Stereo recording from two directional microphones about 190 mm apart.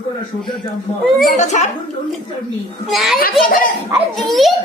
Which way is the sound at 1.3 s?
35° left (ahead or behind).